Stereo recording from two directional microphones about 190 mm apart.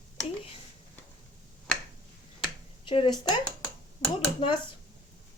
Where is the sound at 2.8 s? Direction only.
25° left (ahead or behind).